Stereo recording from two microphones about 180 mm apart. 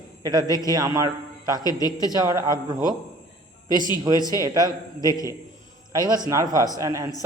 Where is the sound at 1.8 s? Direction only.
20° left (ahead or behind).